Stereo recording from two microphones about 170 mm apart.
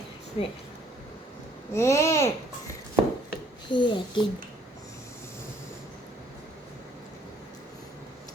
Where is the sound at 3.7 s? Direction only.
30° left (ahead or behind).